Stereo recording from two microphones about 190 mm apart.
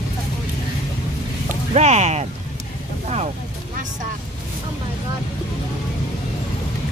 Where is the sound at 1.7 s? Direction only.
35° right (ahead or behind).